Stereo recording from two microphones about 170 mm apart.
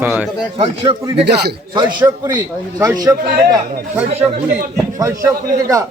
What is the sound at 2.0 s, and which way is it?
A man's voice, 25° right (ahead or behind).